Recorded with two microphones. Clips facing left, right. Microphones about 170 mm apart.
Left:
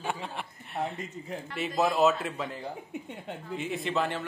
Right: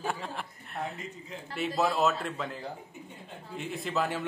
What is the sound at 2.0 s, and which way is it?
Speech, centre (ahead or behind).